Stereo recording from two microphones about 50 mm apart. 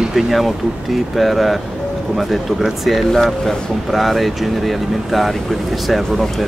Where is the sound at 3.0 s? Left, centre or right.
Centre.